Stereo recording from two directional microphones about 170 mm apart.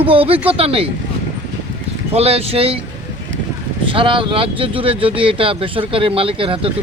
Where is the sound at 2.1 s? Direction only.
35° right (ahead or behind).